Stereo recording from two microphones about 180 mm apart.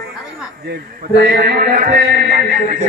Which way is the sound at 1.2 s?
60° right (ahead or behind).